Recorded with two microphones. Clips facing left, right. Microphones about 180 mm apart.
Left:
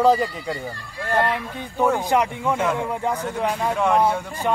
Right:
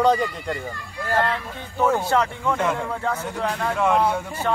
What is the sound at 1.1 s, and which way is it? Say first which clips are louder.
Speech: left 2 dB; 15° left (ahead or behind).